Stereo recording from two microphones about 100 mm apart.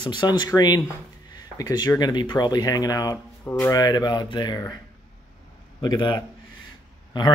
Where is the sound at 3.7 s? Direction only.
40° left (ahead or behind).